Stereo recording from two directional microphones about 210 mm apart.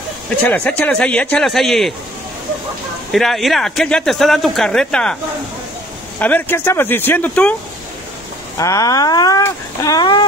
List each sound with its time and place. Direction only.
0.4 s speech: 5° left (ahead or behind)
3.1 s speech: centre (ahead or behind)
6.1 s speech: 10° left (ahead or behind)
8.5 s speech: 15° left (ahead or behind)